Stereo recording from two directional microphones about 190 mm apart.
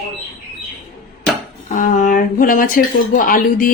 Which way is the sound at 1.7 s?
40° left (ahead or behind).